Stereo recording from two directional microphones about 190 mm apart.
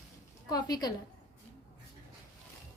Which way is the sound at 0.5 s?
20° left (ahead or behind).